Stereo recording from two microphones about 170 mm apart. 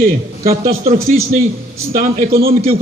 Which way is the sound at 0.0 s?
60° right (ahead or behind).